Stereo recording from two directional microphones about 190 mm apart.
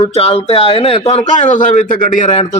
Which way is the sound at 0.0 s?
35° left (ahead or behind).